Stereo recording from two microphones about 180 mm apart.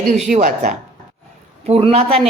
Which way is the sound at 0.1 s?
40° right (ahead or behind).